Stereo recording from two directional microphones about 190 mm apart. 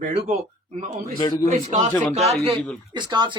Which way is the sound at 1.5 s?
45° right (ahead or behind).